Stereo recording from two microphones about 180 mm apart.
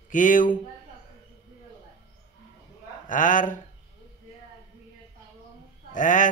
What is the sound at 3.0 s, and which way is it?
Speech, 45° left (ahead or behind).